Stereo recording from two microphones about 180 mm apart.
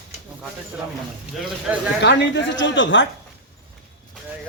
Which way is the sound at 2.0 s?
80° left.